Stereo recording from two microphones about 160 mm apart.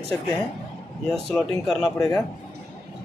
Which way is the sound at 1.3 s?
Centre (ahead or behind).